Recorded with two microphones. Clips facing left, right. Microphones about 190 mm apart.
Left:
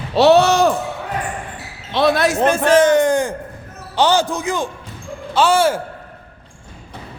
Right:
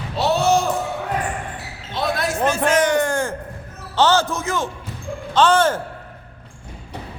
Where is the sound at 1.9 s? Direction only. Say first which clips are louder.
Left 7 dB; 80° left.